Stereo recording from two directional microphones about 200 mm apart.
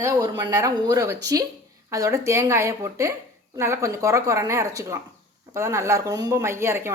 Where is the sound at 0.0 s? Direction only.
15° right (ahead or behind).